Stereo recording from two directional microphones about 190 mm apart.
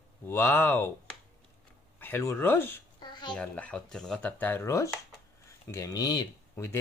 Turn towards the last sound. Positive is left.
turn(degrees=15)  # may be behind; listen again after turning